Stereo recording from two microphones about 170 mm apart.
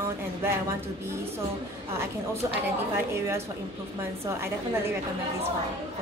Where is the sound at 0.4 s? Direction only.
15° right (ahead or behind).